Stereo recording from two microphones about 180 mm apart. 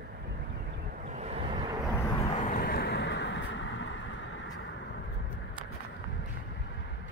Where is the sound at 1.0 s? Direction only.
40° right (ahead or behind).